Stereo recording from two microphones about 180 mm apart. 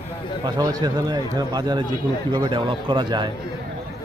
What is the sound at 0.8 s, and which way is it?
Speech, 20° right (ahead or behind).